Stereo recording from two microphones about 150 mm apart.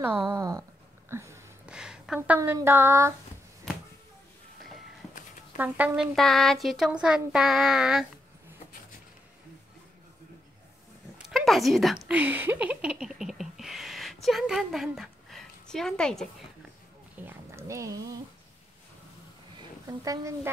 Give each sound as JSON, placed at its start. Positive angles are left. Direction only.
{"t": 0.2, "sound": "a woman's voice", "side_deg": -20}
{"t": 1.1, "sound": "a sound", "side_deg": -20}
{"t": 1.7, "sound": "speech", "side_deg": -5}
{"t": 5.6, "sound": "speech", "side_deg": -10}
{"t": 6.1, "sound": "speech", "side_deg": 0}
{"t": 11.1, "sound": "speech", "side_deg": 0}
{"t": 12.1, "sound": "speech", "side_deg": -10}
{"t": 17.2, "sound": "a sound", "side_deg": -15}
{"t": 19.9, "sound": "a woman's voice", "side_deg": -25}